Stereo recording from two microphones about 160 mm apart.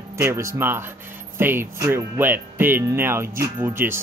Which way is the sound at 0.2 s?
15° right (ahead or behind).